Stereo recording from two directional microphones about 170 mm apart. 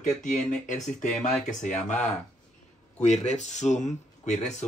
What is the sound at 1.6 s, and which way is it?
Speech, 45° left (ahead or behind).